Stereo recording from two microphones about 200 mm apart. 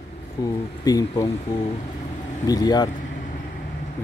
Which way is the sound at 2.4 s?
20° left (ahead or behind).